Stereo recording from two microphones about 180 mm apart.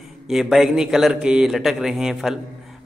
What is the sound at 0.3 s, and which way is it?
A man's voice, centre (ahead or behind).